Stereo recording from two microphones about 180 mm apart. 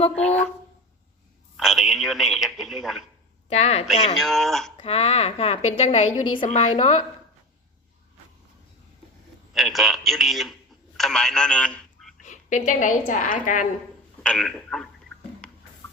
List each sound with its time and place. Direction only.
0.2 s speech: 5° left (ahead or behind)
1.5 s speech: centre (ahead or behind)
3.5 s a woman's voice: 35° left (ahead or behind)
4.2 s speech: centre (ahead or behind)
4.8 s a woman's voice: 35° left (ahead or behind)
9.5 s a man's voice: centre (ahead or behind)
10.9 s telephone: centre (ahead or behind)
12.2 s a woman's voice: 45° left (ahead or behind)
14.2 s speech: 5° left (ahead or behind)